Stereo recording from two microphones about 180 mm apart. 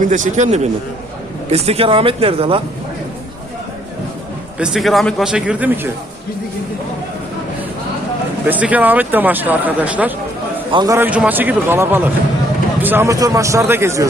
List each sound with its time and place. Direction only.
0.0 s speech: 45° right (ahead or behind)
4.5 s a man's voice: 5° right (ahead or behind)
8.4 s speech: 10° right (ahead or behind)
10.7 s a man's voice: 25° right (ahead or behind)
10.9 s speech: 10° right (ahead or behind)